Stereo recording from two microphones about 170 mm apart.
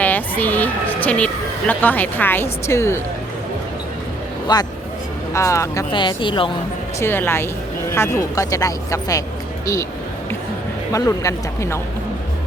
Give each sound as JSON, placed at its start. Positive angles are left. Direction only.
{"t": 0.0, "sound": "speech", "side_deg": 10}
{"t": 4.5, "sound": "speech", "side_deg": 25}
{"t": 7.0, "sound": "speech", "side_deg": 15}
{"t": 10.9, "sound": "speech", "side_deg": 20}